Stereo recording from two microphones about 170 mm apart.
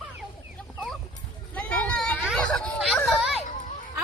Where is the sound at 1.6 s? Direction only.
5° left (ahead or behind).